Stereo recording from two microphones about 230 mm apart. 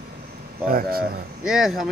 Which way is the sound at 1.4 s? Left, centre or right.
Centre.